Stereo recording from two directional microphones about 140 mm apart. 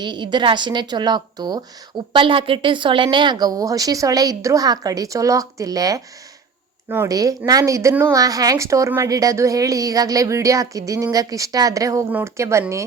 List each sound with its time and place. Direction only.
0.0 s a woman's voice: 35° right (ahead or behind)